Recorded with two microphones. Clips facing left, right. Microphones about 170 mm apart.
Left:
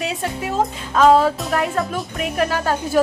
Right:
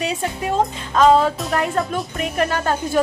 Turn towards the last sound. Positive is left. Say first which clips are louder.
# left 1 dB
turn(degrees=5)  # may be behind; listen again after turning